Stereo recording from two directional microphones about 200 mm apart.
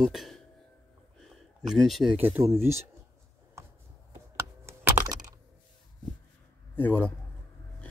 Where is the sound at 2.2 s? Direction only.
15° right (ahead or behind).